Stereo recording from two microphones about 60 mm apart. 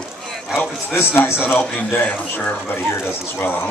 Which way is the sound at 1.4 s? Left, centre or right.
Left.